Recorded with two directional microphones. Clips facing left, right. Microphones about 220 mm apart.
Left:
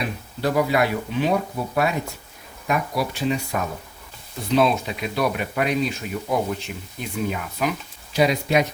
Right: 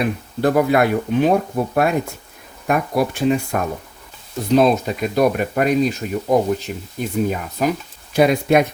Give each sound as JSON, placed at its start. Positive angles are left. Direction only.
{"t": 0.0, "sound": "speech", "side_deg": -50}
{"t": 8.1, "sound": "speech", "side_deg": -55}